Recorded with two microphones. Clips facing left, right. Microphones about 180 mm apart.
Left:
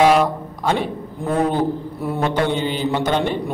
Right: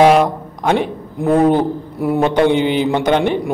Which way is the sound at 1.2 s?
10° right (ahead or behind).